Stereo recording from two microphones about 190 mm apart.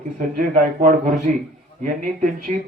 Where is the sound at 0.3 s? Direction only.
45° right (ahead or behind).